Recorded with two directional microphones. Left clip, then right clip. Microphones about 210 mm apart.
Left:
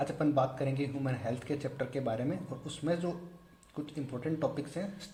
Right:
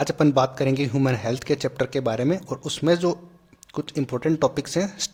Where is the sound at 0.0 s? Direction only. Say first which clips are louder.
Right 10 dB; 40° right (ahead or behind).